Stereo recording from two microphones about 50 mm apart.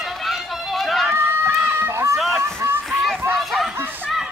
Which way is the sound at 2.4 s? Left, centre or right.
Right.